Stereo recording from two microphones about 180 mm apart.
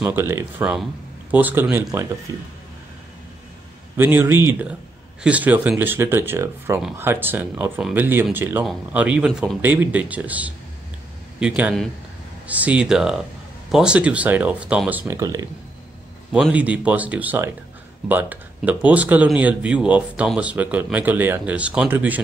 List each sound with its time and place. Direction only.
0.0 s speech: 15° right (ahead or behind)
3.9 s speech: 10° right (ahead or behind)
6.8 s speech: centre (ahead or behind); by 15.4 s 20° right (ahead or behind)
16.3 s speech: 5° right (ahead or behind)